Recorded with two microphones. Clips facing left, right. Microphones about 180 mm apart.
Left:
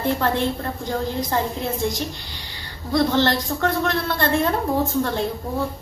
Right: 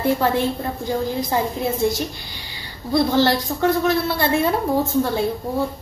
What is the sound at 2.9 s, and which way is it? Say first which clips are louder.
A woman's voice: right 2 dB; 10° right (ahead or behind).